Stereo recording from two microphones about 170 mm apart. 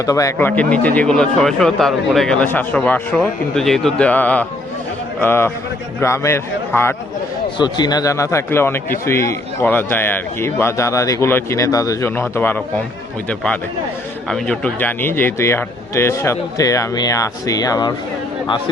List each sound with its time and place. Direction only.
0.0 s speech: 20° left (ahead or behind)
14.3 s speech: 5° left (ahead or behind); by 17.9 s 20° left (ahead or behind)